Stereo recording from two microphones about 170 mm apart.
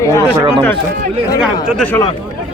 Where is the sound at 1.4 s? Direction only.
5° left (ahead or behind).